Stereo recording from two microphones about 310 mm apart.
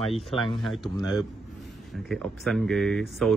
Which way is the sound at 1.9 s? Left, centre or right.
Centre.